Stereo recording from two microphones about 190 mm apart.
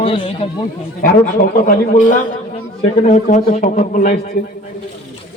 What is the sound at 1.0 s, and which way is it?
Speech, 45° left (ahead or behind).